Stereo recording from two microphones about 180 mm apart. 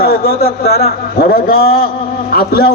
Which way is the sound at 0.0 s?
55° left (ahead or behind).